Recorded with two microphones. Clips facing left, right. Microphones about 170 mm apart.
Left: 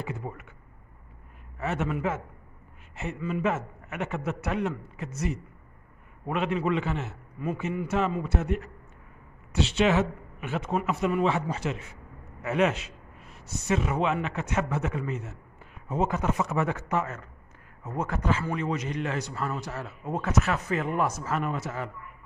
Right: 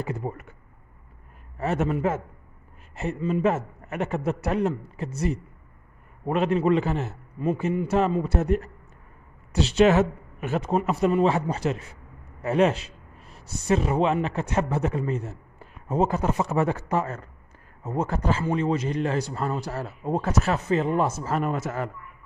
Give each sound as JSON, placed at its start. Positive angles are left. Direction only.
{"t": 0.0, "sound": "speech", "side_deg": -40}
{"t": 1.6, "sound": "speech", "side_deg": -35}